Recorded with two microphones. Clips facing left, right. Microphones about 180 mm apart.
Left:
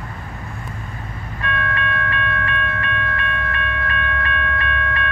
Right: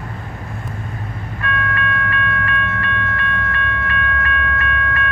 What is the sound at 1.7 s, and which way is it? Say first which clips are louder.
Train: right 2 dB; 25° left (ahead or behind).